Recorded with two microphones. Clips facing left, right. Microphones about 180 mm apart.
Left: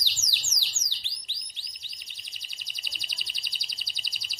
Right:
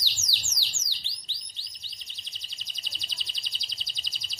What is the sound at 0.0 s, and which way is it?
Bird, 15° left (ahead or behind).